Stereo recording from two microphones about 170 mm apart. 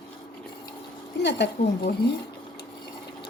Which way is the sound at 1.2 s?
90° left.